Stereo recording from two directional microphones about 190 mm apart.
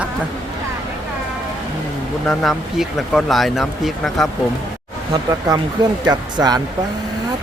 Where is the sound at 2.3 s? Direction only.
Centre (ahead or behind).